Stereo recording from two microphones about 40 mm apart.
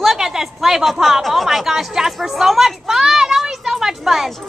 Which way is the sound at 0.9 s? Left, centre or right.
Centre.